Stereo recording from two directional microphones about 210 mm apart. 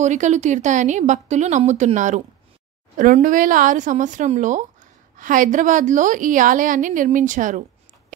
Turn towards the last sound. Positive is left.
turn(degrees=-35)  # may be behind; listen again after turning